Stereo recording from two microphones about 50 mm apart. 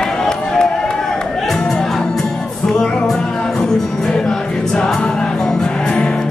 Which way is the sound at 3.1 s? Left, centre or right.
Centre.